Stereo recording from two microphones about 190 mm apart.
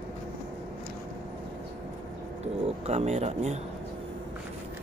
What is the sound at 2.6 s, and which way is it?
Speech, 35° right (ahead or behind).